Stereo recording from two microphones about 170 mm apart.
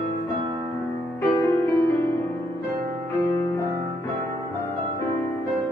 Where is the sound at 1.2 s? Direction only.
15° left (ahead or behind).